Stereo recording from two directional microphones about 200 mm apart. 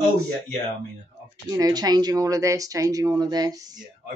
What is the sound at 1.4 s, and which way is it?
A woman's voice, 20° right (ahead or behind).